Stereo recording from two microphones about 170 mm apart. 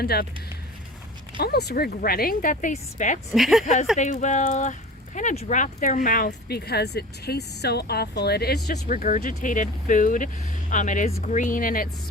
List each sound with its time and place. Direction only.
0.0 s speech: 65° left (ahead or behind)
1.4 s speech: 70° left (ahead or behind); by 3.2 s 50° left (ahead or behind)
3.3 s speech: centre (ahead or behind)
3.9 s speech: 45° left (ahead or behind); by 8.7 s 65° left (ahead or behind)
8.9 s speech: 50° left (ahead or behind)